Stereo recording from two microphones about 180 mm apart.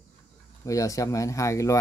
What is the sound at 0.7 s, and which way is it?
Speech, 20° left (ahead or behind).